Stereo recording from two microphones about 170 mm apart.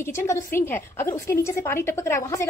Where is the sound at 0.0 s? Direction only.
15° left (ahead or behind).